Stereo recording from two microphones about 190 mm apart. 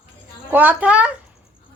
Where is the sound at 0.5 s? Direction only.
10° right (ahead or behind).